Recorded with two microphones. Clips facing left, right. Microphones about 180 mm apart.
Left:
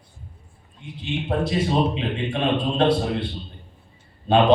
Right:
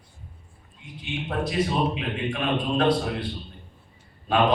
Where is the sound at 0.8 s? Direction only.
30° left (ahead or behind).